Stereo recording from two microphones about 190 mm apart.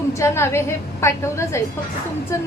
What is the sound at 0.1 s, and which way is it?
A woman's voice, 15° left (ahead or behind).